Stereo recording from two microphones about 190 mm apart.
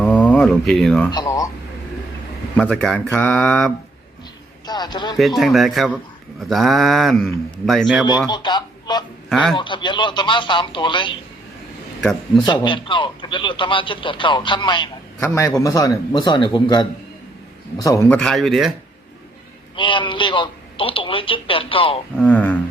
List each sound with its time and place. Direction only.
0.0 s a sound: 5° left (ahead or behind)
1.1 s speech: 20° left (ahead or behind)
2.6 s speech: 5° left (ahead or behind)
4.6 s a man's voice: 20° left (ahead or behind)
5.4 s speech: centre (ahead or behind)
8.3 s speech: 25° left (ahead or behind)
12.4 s speech: 25° left (ahead or behind)
17.8 s a man's voice: 15° left (ahead or behind)
18.2 s speech: centre (ahead or behind)
19.7 s speech: 25° left (ahead or behind)
22.2 s a man's voice: 5° left (ahead or behind)